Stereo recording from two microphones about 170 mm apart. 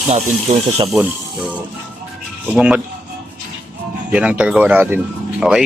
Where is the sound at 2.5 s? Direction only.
5° right (ahead or behind).